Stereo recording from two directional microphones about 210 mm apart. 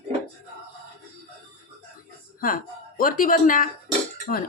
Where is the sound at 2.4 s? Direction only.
40° left (ahead or behind).